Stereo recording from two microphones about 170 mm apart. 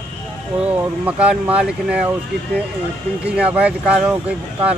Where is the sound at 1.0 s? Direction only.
10° right (ahead or behind).